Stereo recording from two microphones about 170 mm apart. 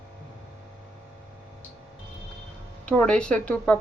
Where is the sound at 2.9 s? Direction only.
5° left (ahead or behind).